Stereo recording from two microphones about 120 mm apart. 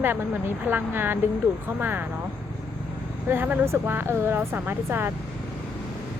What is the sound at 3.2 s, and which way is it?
A woman's voice, 15° right (ahead or behind).